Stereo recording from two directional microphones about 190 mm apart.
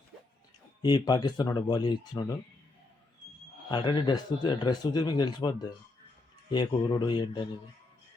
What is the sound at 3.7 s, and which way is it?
Speech, 25° left (ahead or behind).